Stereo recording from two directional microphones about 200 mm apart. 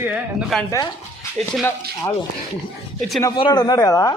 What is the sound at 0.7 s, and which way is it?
Speech, 15° left (ahead or behind).